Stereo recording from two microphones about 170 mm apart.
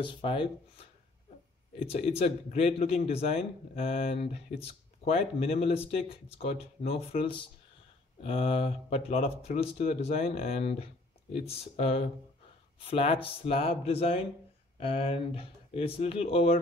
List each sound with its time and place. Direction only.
0.0 s a man's voice: 30° left (ahead or behind)
1.9 s a man's voice: 35° left (ahead or behind)